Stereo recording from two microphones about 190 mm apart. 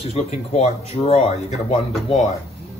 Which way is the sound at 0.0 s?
30° left (ahead or behind).